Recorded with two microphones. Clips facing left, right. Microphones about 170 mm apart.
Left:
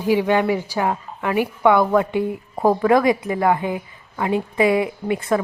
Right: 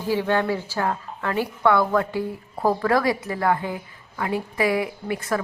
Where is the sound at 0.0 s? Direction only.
15° left (ahead or behind).